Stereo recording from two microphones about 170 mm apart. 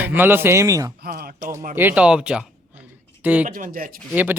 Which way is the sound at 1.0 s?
60° right (ahead or behind).